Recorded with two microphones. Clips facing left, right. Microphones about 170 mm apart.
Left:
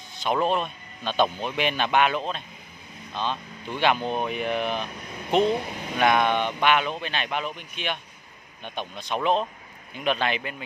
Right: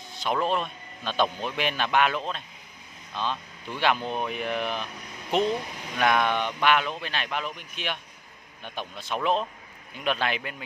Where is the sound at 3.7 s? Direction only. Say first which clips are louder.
Left 2 dB; centre (ahead or behind).